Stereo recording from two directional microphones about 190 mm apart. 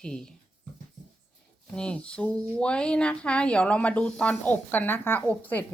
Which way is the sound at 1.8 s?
5° left (ahead or behind).